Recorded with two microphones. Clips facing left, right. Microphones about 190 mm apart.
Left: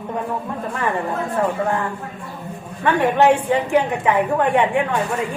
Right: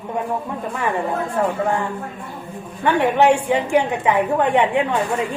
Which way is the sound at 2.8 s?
15° right (ahead or behind).